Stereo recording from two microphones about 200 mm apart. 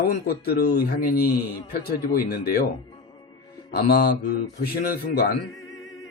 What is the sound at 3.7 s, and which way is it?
A man's voice, 50° left (ahead or behind).